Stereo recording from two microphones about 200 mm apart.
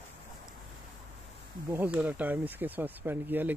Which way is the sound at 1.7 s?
5° right (ahead or behind).